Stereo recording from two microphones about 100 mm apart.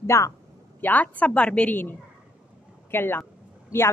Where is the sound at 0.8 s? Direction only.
15° left (ahead or behind).